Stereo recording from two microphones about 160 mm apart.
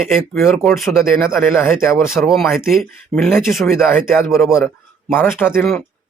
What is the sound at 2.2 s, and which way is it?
Speech, centre (ahead or behind).